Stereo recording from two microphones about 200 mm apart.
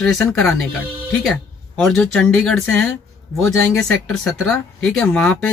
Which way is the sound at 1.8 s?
5° left (ahead or behind).